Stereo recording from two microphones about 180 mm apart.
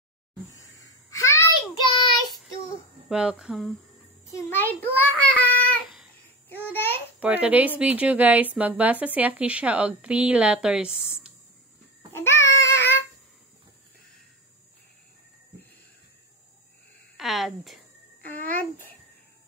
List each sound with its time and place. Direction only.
0.5 s a sound: 20° left (ahead or behind)
3.1 s speech: 5° right (ahead or behind)
4.3 s a child's voice: 10° left (ahead or behind)
6.5 s babbling: 10° left (ahead or behind)
7.2 s speech: 5° right (ahead or behind)
12.1 s babbling: 15° left (ahead or behind)
12.5 s child singing: 15° left (ahead or behind)
17.2 s speech: centre (ahead or behind)
18.3 s babbling: 10° left (ahead or behind)